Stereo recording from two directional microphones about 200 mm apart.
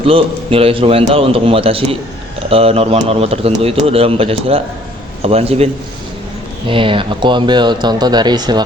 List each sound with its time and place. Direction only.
0.0 s a man's voice: 30° right (ahead or behind)
6.7 s a man's voice: 25° right (ahead or behind)